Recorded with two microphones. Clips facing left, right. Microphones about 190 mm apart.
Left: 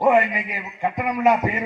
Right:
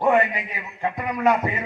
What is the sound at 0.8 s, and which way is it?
Speech, 15° left (ahead or behind).